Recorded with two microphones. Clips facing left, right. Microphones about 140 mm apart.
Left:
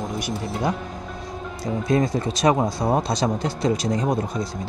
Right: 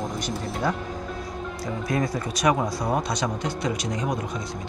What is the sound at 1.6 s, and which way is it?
Speech, 25° left (ahead or behind).